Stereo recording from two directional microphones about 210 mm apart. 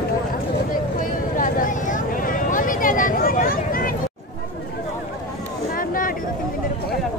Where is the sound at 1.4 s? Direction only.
40° left (ahead or behind).